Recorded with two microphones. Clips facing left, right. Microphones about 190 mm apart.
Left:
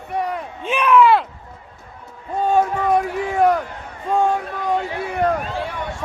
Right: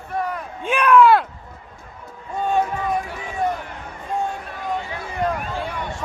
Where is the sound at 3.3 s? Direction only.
80° left.